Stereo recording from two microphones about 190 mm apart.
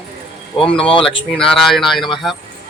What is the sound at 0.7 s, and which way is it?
Speech, 30° left (ahead or behind).